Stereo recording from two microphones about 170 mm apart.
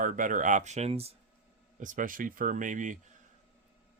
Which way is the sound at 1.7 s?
50° right (ahead or behind).